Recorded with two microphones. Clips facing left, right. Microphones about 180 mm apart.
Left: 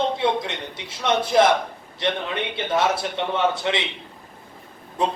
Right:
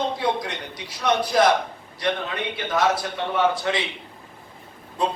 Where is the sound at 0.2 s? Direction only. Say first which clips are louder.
Left 2 dB; 25° left (ahead or behind).